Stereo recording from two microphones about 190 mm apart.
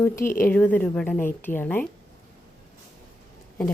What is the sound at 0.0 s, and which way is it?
A woman's voice, 15° left (ahead or behind).